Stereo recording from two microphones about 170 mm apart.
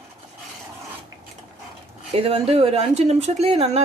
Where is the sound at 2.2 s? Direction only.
35° right (ahead or behind).